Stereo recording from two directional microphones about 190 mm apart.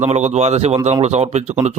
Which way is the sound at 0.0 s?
35° right (ahead or behind).